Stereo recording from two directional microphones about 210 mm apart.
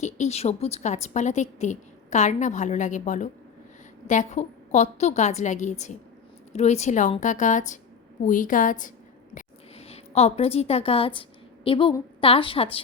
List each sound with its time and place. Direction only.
0.0 s a woman's voice: 30° left (ahead or behind)
9.3 s a sound: 30° left (ahead or behind)
12.2 s speech: 25° left (ahead or behind)